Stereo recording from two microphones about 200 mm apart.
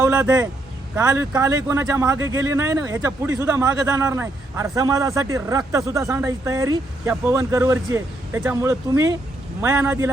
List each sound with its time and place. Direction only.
0.0 s a man's voice: 15° right (ahead or behind)